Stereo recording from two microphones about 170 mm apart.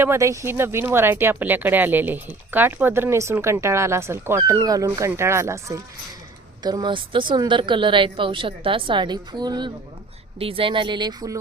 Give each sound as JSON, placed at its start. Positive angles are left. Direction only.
{"t": 0.0, "sound": "a woman's voice", "side_deg": -15}